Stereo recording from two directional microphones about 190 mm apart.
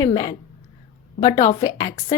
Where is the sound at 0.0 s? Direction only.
20° left (ahead or behind).